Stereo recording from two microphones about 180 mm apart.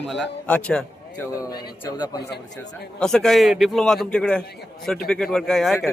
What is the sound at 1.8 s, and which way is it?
Speech, 20° left (ahead or behind).